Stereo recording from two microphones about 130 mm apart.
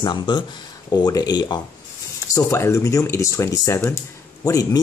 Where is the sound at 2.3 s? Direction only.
20° left (ahead or behind).